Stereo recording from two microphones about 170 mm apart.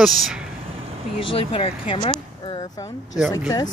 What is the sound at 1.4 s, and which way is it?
Speech, 35° left (ahead or behind).